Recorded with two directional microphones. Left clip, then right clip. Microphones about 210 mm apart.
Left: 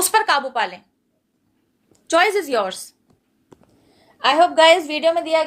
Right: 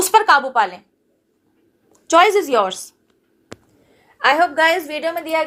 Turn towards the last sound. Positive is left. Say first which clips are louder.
# left 3 dB
turn(degrees=-5)  # may be behind; listen again after turning